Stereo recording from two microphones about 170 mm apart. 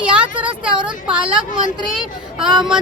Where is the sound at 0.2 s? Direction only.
10° right (ahead or behind).